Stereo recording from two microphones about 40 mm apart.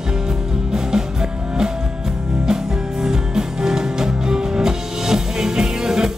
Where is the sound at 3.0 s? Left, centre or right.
Centre.